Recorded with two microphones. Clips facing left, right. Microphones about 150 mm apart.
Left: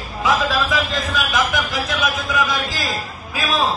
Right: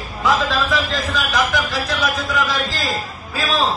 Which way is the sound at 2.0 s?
20° left (ahead or behind).